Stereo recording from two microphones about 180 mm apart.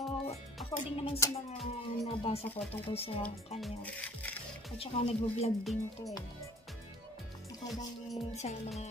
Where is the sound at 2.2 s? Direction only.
35° left (ahead or behind).